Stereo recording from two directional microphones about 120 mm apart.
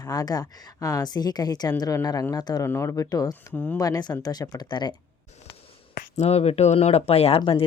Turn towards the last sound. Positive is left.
turn(degrees=55)  # may be behind; listen again after turning